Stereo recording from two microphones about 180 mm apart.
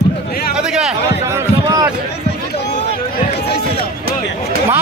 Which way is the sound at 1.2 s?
20° right (ahead or behind).